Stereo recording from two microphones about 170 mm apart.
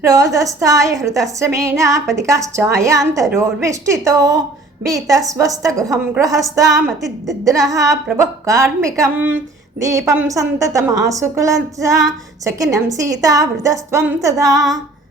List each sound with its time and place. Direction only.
0.0 s a woman's voice: 20° right (ahead or behind)